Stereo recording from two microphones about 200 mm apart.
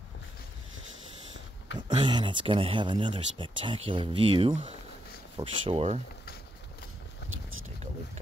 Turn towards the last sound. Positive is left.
turn(degrees=-85)